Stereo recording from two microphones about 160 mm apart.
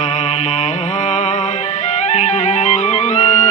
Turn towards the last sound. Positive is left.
turn(degrees=45)  # may be behind; listen again after turning